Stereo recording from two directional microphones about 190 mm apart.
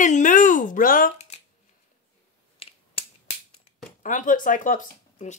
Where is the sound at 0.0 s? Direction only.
40° left (ahead or behind).